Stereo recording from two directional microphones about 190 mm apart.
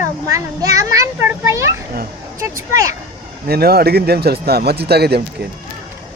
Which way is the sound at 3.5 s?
55° right (ahead or behind).